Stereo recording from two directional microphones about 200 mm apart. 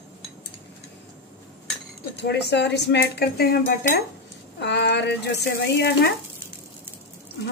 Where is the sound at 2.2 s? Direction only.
60° left (ahead or behind).